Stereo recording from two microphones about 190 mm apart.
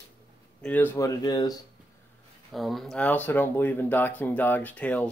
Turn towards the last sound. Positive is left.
turn(degrees=5)  # may be behind; listen again after turning